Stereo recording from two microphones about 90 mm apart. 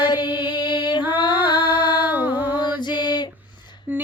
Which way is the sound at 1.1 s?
60° left (ahead or behind).